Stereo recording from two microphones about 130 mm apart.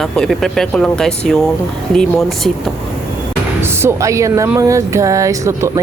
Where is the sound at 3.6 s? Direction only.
20° right (ahead or behind).